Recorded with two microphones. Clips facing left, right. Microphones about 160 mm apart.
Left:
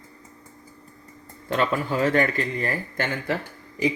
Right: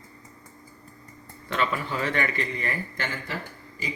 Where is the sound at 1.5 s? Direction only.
45° left (ahead or behind).